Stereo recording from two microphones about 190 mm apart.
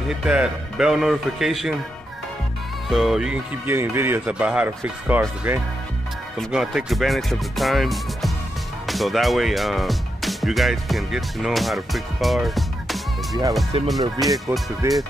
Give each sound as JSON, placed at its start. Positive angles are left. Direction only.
{"t": 0.2, "sound": "speech", "side_deg": -5}
{"t": 2.9, "sound": "speech", "side_deg": 0}
{"t": 13.7, "sound": "speech", "side_deg": -30}
{"t": 14.2, "sound": "speech", "side_deg": 0}
{"t": 14.8, "sound": "speech", "side_deg": -15}